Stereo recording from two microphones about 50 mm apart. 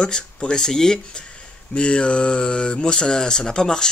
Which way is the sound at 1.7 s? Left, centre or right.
Left.